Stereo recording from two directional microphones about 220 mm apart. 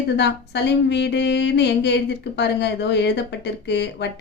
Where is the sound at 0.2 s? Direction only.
50° left (ahead or behind).